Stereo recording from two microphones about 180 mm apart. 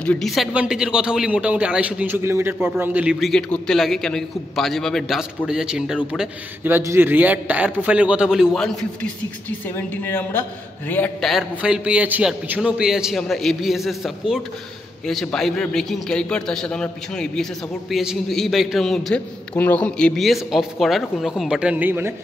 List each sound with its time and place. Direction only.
0.0 s a man's voice: 5° left (ahead or behind)